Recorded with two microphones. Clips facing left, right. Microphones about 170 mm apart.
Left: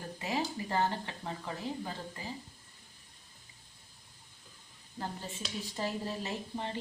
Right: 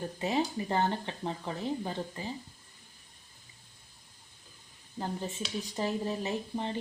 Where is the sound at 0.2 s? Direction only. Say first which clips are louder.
Right 4 dB; 25° right (ahead or behind).